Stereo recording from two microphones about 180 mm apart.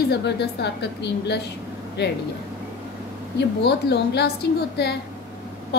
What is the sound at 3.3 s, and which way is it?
Speech, 70° left (ahead or behind).